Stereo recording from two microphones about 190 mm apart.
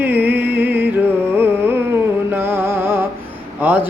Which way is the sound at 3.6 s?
10° right (ahead or behind).